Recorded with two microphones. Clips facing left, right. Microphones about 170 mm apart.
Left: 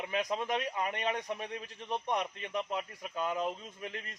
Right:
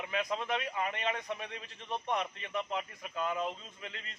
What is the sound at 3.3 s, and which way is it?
Speech, 15° left (ahead or behind).